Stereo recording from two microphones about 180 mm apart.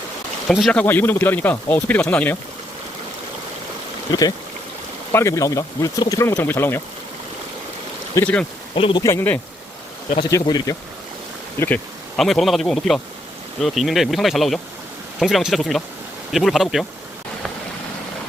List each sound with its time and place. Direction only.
0.4 s speech: centre (ahead or behind)
5.1 s speech: 15° left (ahead or behind)
8.1 s speech: 10° left (ahead or behind)
8.7 s speech: 30° left (ahead or behind)
9.0 s speech: 10° left (ahead or behind)
11.6 s speech: 5° left (ahead or behind)